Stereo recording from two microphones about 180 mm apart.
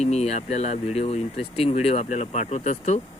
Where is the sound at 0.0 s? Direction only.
35° left (ahead or behind).